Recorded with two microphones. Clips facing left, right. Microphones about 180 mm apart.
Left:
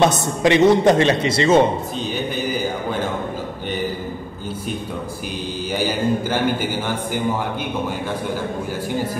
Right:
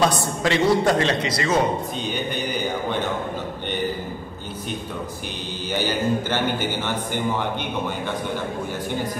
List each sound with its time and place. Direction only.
0.0 s a man's voice: 20° left (ahead or behind)
5.7 s a man's voice: 10° left (ahead or behind)